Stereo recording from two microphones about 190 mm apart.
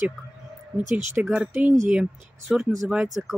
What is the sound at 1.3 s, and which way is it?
Speech, 5° right (ahead or behind).